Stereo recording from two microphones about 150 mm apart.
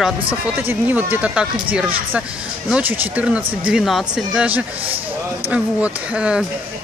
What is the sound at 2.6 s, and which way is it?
Speech, 10° right (ahead or behind).